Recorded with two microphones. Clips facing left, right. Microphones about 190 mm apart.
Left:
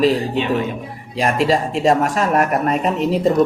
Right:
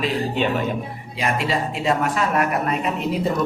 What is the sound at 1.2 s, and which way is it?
Speech, 40° left (ahead or behind).